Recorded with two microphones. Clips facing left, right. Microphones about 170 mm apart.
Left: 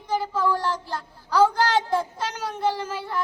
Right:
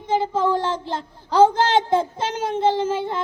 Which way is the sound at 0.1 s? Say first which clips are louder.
Right 4 dB; 20° right (ahead or behind).